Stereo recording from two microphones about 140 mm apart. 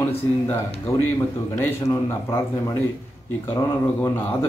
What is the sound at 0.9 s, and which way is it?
A man's voice, 20° left (ahead or behind).